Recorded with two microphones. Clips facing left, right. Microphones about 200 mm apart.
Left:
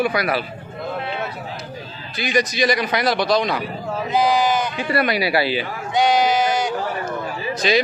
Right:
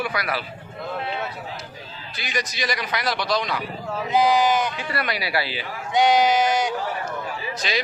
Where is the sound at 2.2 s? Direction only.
20° left (ahead or behind).